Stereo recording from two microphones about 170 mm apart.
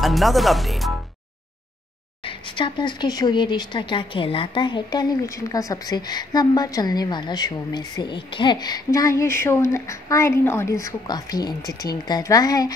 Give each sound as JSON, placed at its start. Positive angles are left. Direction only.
{"t": 0.0, "sound": "speech", "side_deg": 0}
{"t": 2.2, "sound": "speech", "side_deg": 30}